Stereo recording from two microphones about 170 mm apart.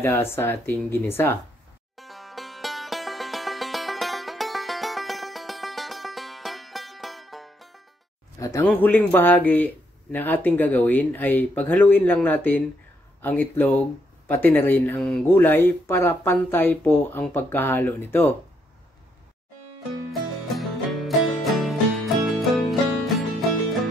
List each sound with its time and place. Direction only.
0.0 s speech: 15° left (ahead or behind)
2.0 s music: centre (ahead or behind)
8.4 s speech: 20° left (ahead or behind)
20.1 s music: centre (ahead or behind)